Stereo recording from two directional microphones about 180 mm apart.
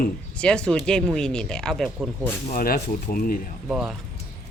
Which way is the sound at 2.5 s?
55° left (ahead or behind).